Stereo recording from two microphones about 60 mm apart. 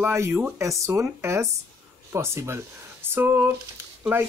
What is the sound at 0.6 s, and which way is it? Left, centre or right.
Speech, right.